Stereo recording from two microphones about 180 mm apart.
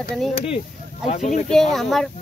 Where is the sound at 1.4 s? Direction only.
Centre (ahead or behind).